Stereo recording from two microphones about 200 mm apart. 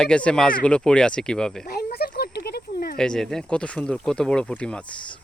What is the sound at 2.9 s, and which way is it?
Speech, 5° left (ahead or behind).